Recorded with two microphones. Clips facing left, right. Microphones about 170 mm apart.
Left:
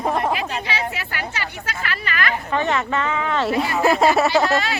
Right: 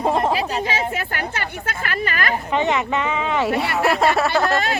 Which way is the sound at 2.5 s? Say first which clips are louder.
Right 2 dB; 20° right (ahead or behind).